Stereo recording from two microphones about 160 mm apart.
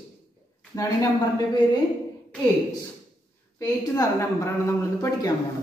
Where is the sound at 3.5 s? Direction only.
20° left (ahead or behind).